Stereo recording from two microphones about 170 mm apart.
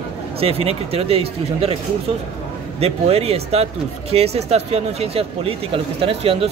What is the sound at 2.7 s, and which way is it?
Speech, 35° right (ahead or behind).